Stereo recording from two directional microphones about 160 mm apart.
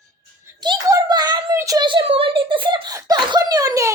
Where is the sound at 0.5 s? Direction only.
25° right (ahead or behind).